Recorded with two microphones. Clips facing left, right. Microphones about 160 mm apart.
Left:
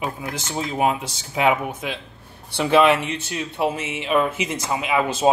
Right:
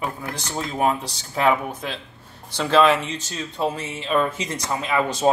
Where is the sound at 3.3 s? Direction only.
15° left (ahead or behind).